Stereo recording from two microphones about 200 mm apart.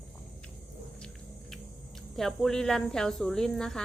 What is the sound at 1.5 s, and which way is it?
Speech, centre (ahead or behind).